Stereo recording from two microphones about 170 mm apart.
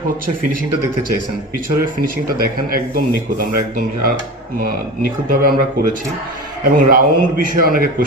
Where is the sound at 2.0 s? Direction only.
55° right (ahead or behind).